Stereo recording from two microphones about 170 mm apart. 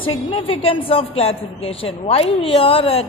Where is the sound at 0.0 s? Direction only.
30° left (ahead or behind).